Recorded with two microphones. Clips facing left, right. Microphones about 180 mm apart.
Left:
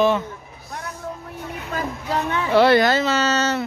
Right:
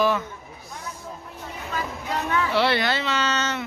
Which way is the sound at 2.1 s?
25° left (ahead or behind).